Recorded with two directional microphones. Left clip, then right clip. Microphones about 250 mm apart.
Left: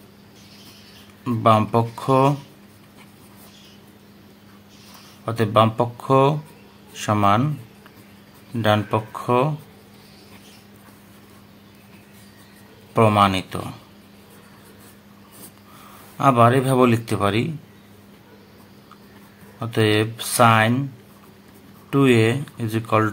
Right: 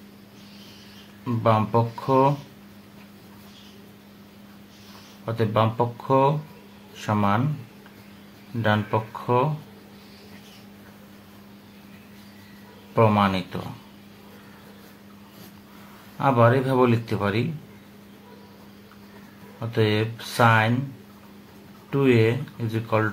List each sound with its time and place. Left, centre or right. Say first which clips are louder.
1.2 s speech: left 5 dB; left
5.2 s speech: left 5 dB; left
8.6 s speech: left 4 dB; left
12.9 s speech: left 4 dB; left
16.2 s speech: left 4 dB; left
19.6 s speech: left 4 dB; left
21.9 s speech: left 3 dB; left